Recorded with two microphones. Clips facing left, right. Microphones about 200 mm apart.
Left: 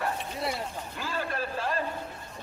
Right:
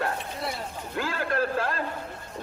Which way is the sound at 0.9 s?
85° right.